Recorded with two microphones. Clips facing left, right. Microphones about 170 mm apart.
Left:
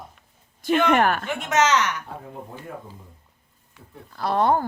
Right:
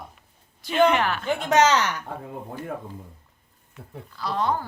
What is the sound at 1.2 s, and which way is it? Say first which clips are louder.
Speech: right 2 dB; 35° right (ahead or behind).